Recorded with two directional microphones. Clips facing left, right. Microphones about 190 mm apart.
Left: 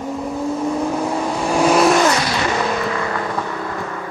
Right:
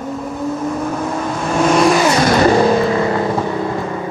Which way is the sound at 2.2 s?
45° right (ahead or behind).